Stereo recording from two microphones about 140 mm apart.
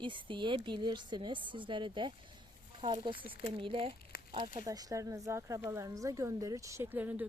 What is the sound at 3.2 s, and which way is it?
Speech, 45° right (ahead or behind).